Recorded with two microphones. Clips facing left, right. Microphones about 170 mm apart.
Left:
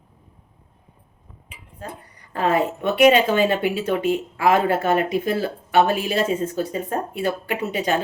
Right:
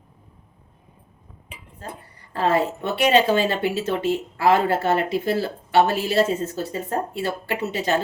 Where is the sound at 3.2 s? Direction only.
30° right (ahead or behind).